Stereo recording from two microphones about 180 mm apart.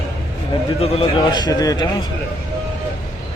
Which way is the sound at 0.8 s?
35° left (ahead or behind).